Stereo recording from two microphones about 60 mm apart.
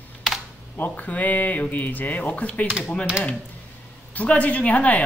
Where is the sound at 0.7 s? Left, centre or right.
Left.